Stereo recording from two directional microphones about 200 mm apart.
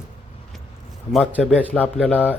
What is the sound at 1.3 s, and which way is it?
Speech, 10° right (ahead or behind).